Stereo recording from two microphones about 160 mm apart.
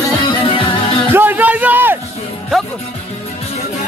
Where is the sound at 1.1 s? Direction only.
10° right (ahead or behind).